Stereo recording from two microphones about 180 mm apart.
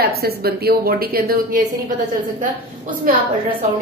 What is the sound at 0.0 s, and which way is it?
A woman's voice, 60° right (ahead or behind).